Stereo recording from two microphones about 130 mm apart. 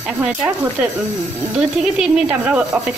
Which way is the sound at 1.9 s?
10° right (ahead or behind).